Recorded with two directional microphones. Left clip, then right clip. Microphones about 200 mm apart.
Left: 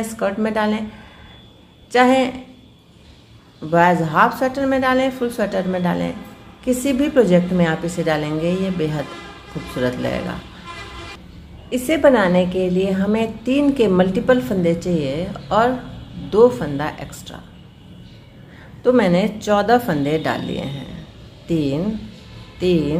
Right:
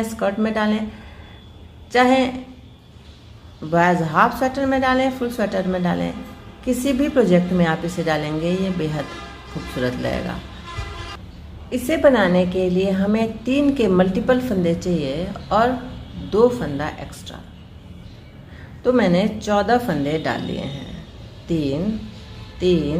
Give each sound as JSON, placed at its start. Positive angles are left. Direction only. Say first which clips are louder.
{"t": 0.1, "sound": "a woman's voice", "louder": "left 3 dB", "side_deg": 10}
{"t": 1.9, "sound": "a woman's voice", "louder": "left 1 dB", "side_deg": 10}
{"t": 3.7, "sound": "a woman's voice", "louder": "left 2 dB", "side_deg": 10}
{"t": 11.7, "sound": "a woman's voice", "louder": "left 1 dB", "side_deg": 15}
{"t": 18.8, "sound": "a woman's voice", "louder": "left 2 dB", "side_deg": 15}